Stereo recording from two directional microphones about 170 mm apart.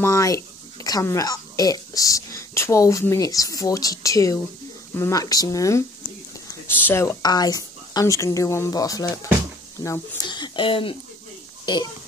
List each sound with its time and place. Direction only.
0.0 s a woman's voice: 20° left (ahead or behind)
6.9 s a woman's voice: 15° left (ahead or behind)